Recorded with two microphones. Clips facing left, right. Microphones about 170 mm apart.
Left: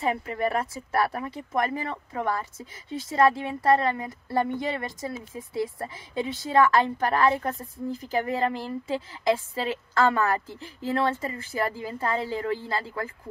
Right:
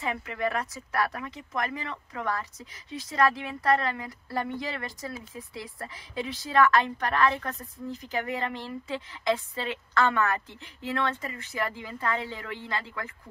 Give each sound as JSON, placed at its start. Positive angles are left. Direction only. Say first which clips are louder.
{"t": 0.0, "sound": "a woman's voice", "louder": "left 4 dB", "side_deg": 30}